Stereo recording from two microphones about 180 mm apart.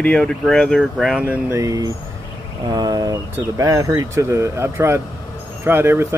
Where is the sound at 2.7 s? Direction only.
20° right (ahead or behind).